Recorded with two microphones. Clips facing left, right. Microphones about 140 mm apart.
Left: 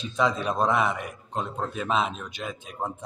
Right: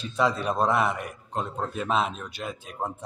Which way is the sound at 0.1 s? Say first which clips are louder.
Even; 5° right (ahead or behind).